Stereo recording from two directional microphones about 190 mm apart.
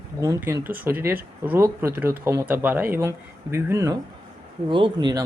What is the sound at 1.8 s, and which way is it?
Speech, 10° right (ahead or behind).